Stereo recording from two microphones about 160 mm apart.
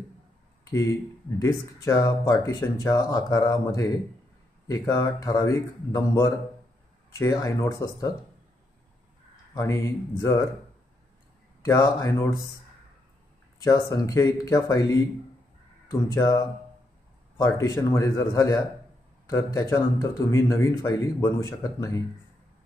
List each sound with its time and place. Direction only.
1.4 s speech: 20° left (ahead or behind)
9.5 s speech: 20° left (ahead or behind)
11.6 s speech: 20° left (ahead or behind)
13.6 s speech: 20° left (ahead or behind)